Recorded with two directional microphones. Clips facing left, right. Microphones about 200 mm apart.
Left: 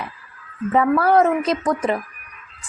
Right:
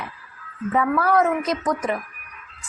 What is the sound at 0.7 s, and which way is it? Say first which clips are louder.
A woman's voice: left 4 dB; 30° left (ahead or behind).